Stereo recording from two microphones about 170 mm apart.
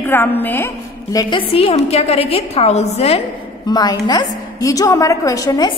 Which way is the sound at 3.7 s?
25° left (ahead or behind).